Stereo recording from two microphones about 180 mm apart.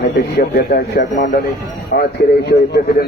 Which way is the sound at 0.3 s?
65° left (ahead or behind).